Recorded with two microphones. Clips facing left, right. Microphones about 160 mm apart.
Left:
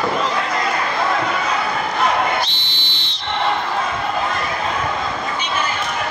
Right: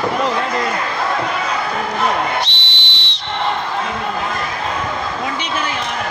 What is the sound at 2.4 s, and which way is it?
Whistle, 75° right (ahead or behind).